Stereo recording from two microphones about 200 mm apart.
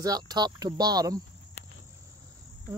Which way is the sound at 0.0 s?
20° right (ahead or behind).